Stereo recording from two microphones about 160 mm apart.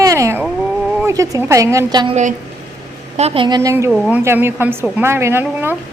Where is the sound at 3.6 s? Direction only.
20° right (ahead or behind).